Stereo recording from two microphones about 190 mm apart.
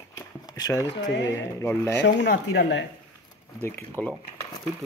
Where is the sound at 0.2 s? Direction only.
20° left (ahead or behind).